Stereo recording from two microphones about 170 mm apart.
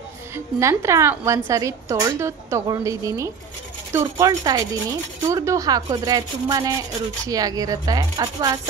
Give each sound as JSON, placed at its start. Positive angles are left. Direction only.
{"t": 0.6, "sound": "a woman's voice", "side_deg": -15}